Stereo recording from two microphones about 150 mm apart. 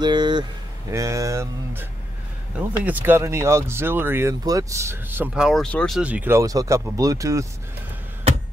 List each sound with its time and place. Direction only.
0.0 s a sound: 30° right (ahead or behind)
2.8 s speech: 10° right (ahead or behind); by 5.9 s 5° left (ahead or behind)
5.9 s speech: 10° right (ahead or behind)